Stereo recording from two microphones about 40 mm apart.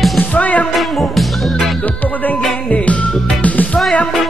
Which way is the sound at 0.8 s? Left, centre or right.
Centre.